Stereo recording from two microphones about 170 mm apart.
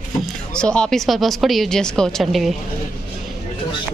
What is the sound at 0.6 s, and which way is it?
Speech, 5° left (ahead or behind).